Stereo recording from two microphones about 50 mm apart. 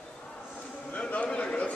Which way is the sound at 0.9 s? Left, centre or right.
Left.